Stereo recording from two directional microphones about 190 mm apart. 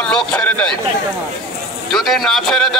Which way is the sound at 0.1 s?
5° left (ahead or behind).